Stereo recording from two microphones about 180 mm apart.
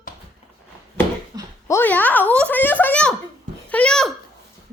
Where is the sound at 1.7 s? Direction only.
10° left (ahead or behind).